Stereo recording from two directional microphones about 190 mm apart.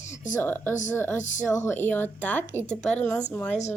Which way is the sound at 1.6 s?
10° left (ahead or behind).